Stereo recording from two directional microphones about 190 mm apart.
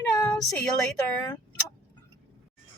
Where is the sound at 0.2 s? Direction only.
5° left (ahead or behind).